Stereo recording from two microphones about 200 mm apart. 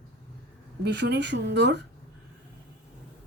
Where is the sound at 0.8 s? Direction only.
60° right (ahead or behind).